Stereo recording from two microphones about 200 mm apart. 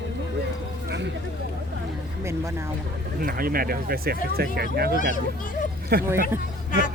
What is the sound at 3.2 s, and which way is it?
Speech, 45° right (ahead or behind).